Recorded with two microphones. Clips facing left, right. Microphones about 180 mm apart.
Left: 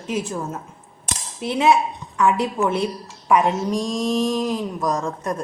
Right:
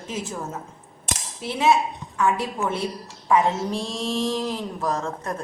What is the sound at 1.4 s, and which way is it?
A woman's voice, 20° left (ahead or behind).